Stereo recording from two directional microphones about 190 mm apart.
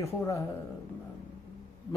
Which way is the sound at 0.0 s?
15° left (ahead or behind).